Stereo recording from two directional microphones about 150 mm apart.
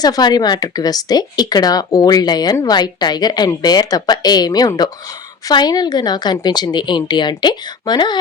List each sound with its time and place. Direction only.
0.0 s speech: 25° left (ahead or behind)